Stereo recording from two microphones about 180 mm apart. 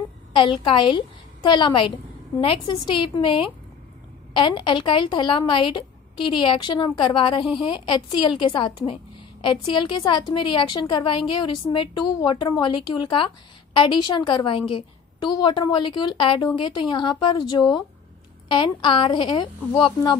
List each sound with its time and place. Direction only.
0.4 s a woman's voice: 25° left (ahead or behind)